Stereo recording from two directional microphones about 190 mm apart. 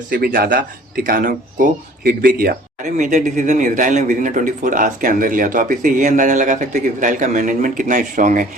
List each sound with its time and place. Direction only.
0.1 s speech: 45° right (ahead or behind)
2.8 s speech: 40° right (ahead or behind)